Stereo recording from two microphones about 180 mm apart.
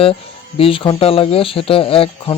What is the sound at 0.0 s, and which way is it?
Speech, 30° left (ahead or behind).